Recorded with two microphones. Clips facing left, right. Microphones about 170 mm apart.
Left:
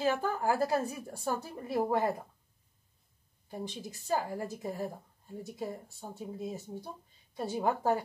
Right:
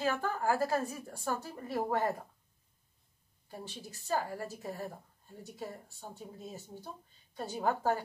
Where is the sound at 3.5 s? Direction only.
15° left (ahead or behind).